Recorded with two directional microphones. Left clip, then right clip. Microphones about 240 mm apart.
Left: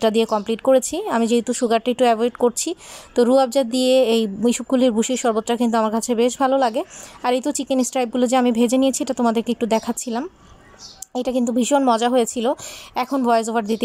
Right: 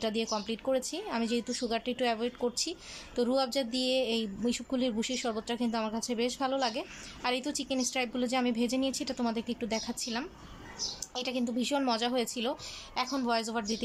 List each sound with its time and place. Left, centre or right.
0.0 s speech: left